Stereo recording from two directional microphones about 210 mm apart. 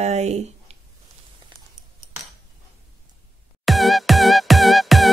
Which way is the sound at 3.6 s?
Centre (ahead or behind).